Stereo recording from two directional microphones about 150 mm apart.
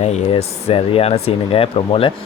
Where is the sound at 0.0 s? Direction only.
40° left (ahead or behind).